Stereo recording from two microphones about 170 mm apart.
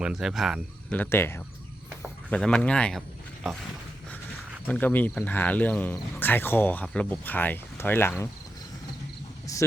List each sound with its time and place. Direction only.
0.0 s speech: 5° right (ahead or behind)
0.9 s speech: 10° left (ahead or behind)
4.6 s speech: 10° left (ahead or behind)
9.5 s speech: 20° left (ahead or behind)